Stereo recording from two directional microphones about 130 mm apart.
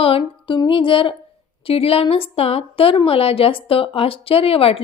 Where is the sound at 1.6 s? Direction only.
50° left (ahead or behind).